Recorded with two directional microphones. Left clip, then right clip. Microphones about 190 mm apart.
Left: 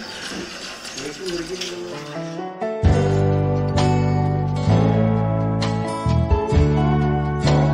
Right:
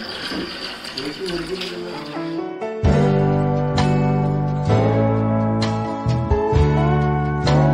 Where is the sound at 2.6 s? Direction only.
Centre (ahead or behind).